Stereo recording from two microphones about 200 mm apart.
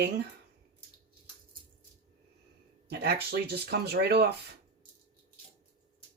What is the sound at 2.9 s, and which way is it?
Speech, 55° right (ahead or behind).